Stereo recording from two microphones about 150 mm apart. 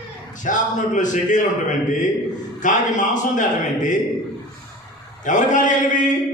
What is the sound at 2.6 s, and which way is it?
A man's voice, 60° left (ahead or behind).